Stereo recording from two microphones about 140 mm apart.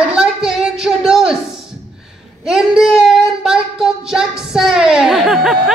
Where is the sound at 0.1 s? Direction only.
5° right (ahead or behind).